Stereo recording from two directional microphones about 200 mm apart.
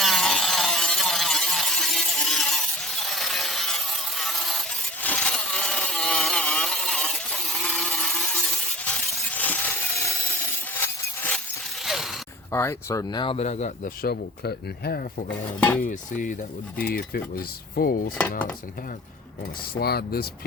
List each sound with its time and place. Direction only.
0.0 s a sound: centre (ahead or behind)
11.9 s zipper: centre (ahead or behind)
12.5 s speech: 10° left (ahead or behind); by 15.4 s 50° left (ahead or behind)
15.8 s speech: 40° left (ahead or behind)
19.7 s speech: 50° left (ahead or behind)